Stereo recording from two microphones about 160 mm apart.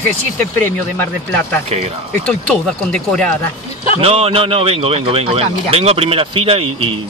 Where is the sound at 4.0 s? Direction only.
35° right (ahead or behind).